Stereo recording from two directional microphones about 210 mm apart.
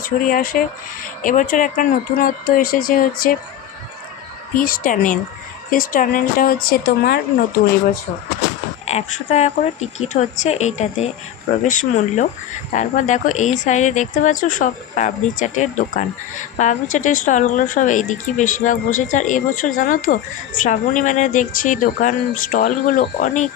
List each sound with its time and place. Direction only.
0.0 s speech: 40° left (ahead or behind)
4.5 s speech: 40° left (ahead or behind)
8.9 s speech: 30° left (ahead or behind)